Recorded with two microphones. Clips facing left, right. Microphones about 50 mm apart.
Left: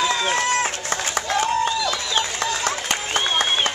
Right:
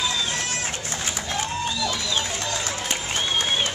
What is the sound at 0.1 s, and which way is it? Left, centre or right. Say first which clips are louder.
Run: left 7 dB; left.